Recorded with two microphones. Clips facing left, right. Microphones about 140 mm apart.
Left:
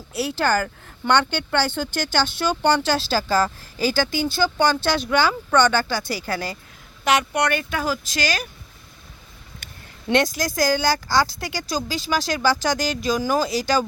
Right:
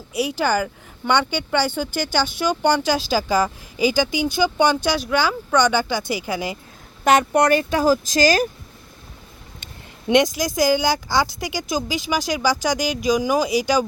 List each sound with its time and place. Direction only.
0.1 s speech: 10° right (ahead or behind)
7.0 s speech: 45° right (ahead or behind)
7.6 s speech: 30° right (ahead or behind)
10.1 s speech: 15° right (ahead or behind)